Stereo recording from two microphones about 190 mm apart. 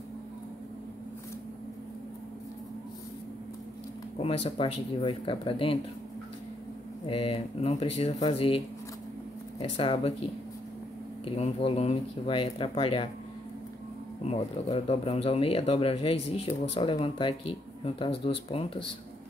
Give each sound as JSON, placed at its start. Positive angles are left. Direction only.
{"t": 4.2, "sound": "speech", "side_deg": 30}
{"t": 7.1, "sound": "speech", "side_deg": 30}
{"t": 14.2, "sound": "speech", "side_deg": 30}